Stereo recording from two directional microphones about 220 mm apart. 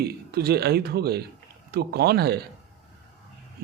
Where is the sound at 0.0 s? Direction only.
45° right (ahead or behind).